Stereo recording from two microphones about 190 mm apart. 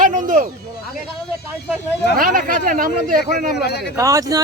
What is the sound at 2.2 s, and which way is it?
Speech, 50° right (ahead or behind).